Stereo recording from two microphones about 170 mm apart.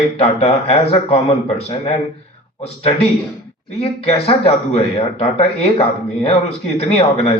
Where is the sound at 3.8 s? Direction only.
35° left (ahead or behind).